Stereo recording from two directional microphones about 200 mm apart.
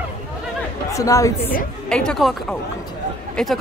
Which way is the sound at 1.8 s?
5° left (ahead or behind).